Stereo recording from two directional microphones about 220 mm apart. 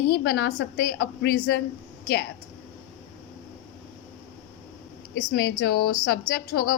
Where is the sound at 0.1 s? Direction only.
45° left (ahead or behind).